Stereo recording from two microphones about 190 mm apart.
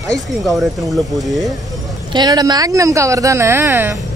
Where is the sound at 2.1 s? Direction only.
20° right (ahead or behind).